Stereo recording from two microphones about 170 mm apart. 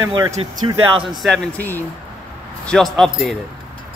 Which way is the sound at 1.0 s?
Centre (ahead or behind).